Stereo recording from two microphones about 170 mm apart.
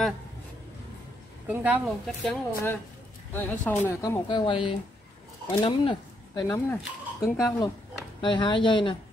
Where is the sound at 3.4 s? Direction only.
10° left (ahead or behind).